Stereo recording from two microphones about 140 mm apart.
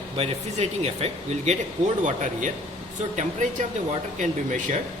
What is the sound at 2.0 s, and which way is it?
Speech, 65° right (ahead or behind).